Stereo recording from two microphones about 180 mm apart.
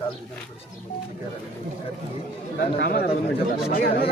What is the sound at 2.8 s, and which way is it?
Speech, 60° left (ahead or behind).